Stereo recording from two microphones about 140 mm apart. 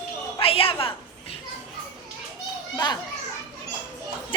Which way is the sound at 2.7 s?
30° left (ahead or behind).